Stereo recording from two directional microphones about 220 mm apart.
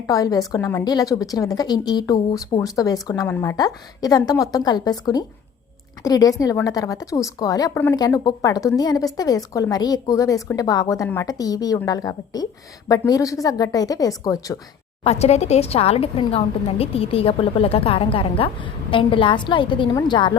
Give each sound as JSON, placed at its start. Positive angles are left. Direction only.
{"t": 0.1, "sound": "a woman's voice", "side_deg": 15}
{"t": 15.0, "sound": "a woman's voice", "side_deg": 30}